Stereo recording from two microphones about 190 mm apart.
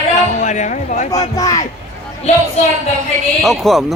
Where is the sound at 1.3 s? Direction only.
20° left (ahead or behind).